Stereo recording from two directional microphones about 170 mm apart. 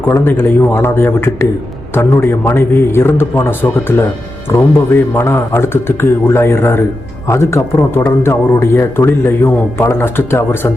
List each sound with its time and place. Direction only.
0.0 s speech: 15° left (ahead or behind)